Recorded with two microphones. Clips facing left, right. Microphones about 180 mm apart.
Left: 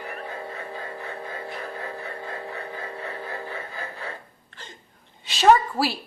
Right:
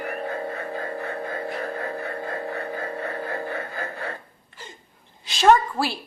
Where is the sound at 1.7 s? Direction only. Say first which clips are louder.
Right 4 dB; 50° right (ahead or behind).